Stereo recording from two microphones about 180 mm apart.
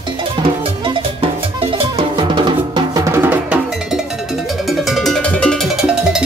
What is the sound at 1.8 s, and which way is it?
Drum, 30° right (ahead or behind).